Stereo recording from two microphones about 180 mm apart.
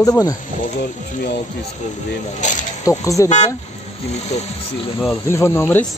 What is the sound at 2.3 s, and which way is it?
Mechanisms, 45° left (ahead or behind).